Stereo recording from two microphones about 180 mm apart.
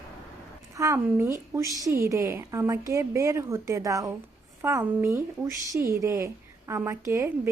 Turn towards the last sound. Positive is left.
turn(degrees=-15)  # may be behind; listen again after turning